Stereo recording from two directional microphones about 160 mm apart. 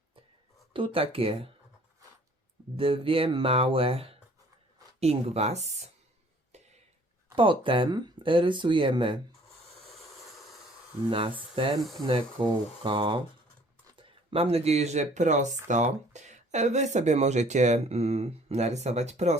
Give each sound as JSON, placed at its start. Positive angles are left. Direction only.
{"t": 0.7, "sound": "speech", "side_deg": -35}
{"t": 2.7, "sound": "speech", "side_deg": -35}
{"t": 7.3, "sound": "speech", "side_deg": -30}
{"t": 11.1, "sound": "speech", "side_deg": -35}
{"t": 11.8, "sound": "speech", "side_deg": 0}
{"t": 12.4, "sound": "speech", "side_deg": -30}